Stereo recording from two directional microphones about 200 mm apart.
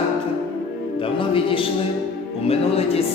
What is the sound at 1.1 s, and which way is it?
Speech, 25° left (ahead or behind).